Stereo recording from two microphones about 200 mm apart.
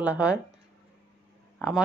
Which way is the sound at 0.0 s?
5° right (ahead or behind).